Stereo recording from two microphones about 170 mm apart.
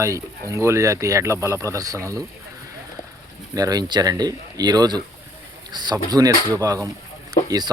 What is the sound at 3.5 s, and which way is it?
Speech, 20° right (ahead or behind).